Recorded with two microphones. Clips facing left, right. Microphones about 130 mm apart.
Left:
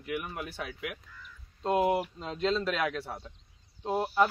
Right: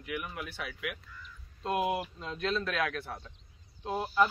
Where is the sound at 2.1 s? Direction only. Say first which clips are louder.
Left 3 dB; 20° left (ahead or behind).